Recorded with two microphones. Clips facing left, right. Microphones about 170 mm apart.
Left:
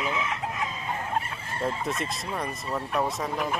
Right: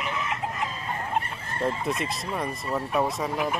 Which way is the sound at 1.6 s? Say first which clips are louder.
Right 2 dB; centre (ahead or behind).